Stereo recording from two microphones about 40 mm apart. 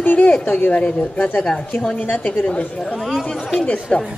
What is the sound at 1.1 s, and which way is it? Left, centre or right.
Speech, left.